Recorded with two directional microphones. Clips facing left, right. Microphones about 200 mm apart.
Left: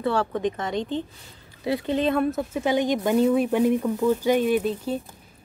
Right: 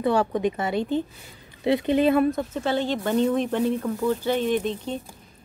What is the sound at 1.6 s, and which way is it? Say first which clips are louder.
A woman's voice: right 4 dB; 20° right (ahead or behind).